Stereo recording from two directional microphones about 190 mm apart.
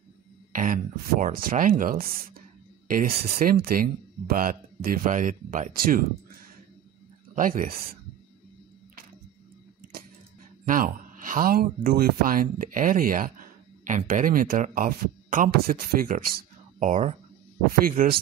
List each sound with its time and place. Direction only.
0.5 s speech: 45° right (ahead or behind)
7.3 s speech: 45° right (ahead or behind)
10.7 s speech: 45° right (ahead or behind)
16.8 s speech: 40° right (ahead or behind)
17.8 s speech: 50° right (ahead or behind)